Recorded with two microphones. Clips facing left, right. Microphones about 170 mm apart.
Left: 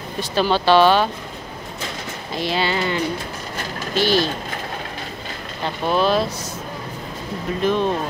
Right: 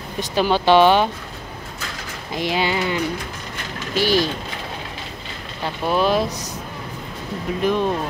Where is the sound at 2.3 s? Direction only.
15° right (ahead or behind).